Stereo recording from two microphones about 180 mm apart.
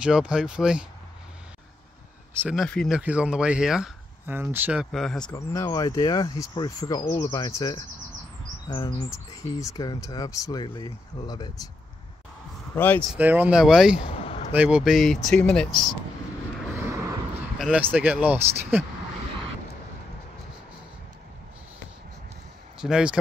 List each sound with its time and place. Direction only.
0.0 s speech: 5° right (ahead or behind)
2.5 s speech: centre (ahead or behind)
4.9 s speech: centre (ahead or behind)
5.3 s speech: 15° left (ahead or behind)
12.7 s speech: 10° left (ahead or behind)
13.1 s speech: 10° right (ahead or behind)
14.0 s a sound: 35° left (ahead or behind)
14.5 s speech: 5° right (ahead or behind)
16.7 s vehicle: 15° right (ahead or behind)
17.6 s speech: 5° right (ahead or behind)
22.8 s speech: 5° right (ahead or behind)